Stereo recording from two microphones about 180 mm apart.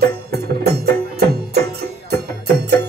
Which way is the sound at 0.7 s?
60° right (ahead or behind).